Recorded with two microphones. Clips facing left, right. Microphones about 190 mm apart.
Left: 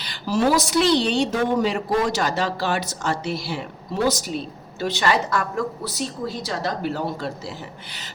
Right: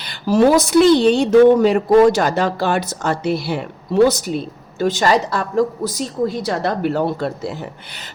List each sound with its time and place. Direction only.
0.0 s a woman's voice: 55° right (ahead or behind)
4.8 s a woman's voice: 45° right (ahead or behind)